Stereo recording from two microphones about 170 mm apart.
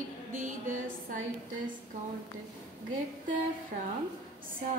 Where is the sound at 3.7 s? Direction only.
60° right (ahead or behind).